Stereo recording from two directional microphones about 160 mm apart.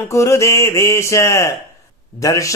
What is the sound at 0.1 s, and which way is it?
Speech, 20° left (ahead or behind).